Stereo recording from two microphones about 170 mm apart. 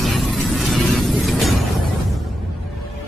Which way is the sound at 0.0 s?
Centre (ahead or behind).